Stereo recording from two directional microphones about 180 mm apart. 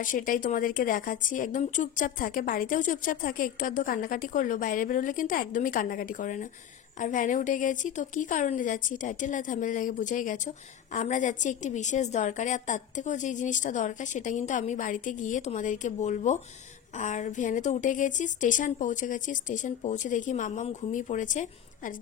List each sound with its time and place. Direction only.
0.0 s a woman's voice: 50° left (ahead or behind)